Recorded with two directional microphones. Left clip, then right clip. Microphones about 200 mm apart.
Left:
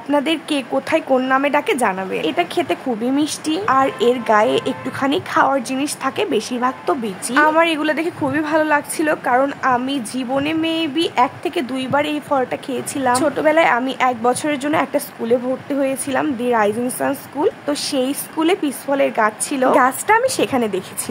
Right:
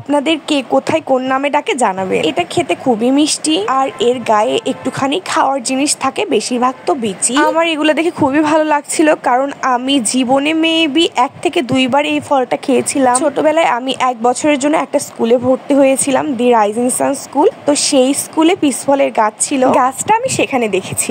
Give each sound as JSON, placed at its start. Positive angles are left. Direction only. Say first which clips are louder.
{"t": 0.1, "sound": "speech", "louder": "right 5 dB", "side_deg": -20}